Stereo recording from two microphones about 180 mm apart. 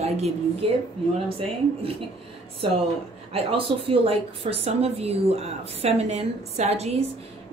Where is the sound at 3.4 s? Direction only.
30° right (ahead or behind).